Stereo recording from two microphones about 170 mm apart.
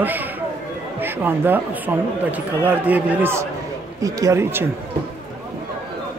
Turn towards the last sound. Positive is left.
turn(degrees=-15)  # may be behind; listen again after turning